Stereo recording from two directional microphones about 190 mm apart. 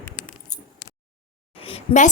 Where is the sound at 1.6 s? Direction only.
30° left (ahead or behind).